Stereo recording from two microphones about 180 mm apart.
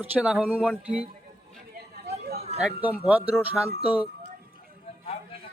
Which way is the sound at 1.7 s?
60° right (ahead or behind).